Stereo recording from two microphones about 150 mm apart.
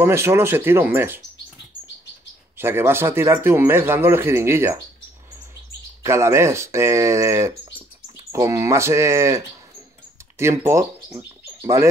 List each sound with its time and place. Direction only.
0.0 s speech: 15° right (ahead or behind)
2.5 s speech: 15° right (ahead or behind)
6.0 s speech: 20° right (ahead or behind)
10.4 s speech: 20° right (ahead or behind)